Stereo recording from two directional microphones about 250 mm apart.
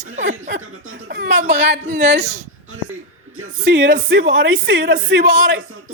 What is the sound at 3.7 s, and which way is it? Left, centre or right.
Speech, right.